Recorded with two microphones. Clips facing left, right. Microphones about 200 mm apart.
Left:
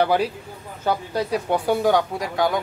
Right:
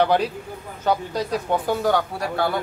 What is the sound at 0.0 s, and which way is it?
Speech, 10° left (ahead or behind).